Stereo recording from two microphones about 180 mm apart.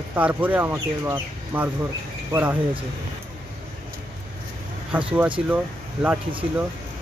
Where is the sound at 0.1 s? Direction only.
10° right (ahead or behind).